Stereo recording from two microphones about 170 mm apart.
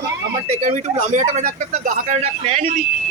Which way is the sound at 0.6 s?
45° right (ahead or behind).